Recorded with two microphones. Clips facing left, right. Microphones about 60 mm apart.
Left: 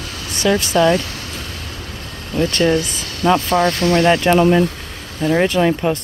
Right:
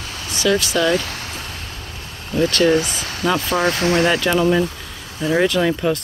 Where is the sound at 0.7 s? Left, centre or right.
Left.